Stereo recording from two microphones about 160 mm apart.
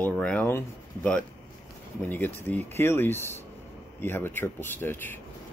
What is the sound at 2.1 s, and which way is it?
Speech, 10° left (ahead or behind).